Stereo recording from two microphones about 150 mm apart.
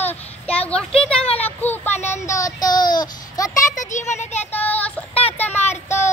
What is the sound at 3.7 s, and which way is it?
Speech, 55° left (ahead or behind).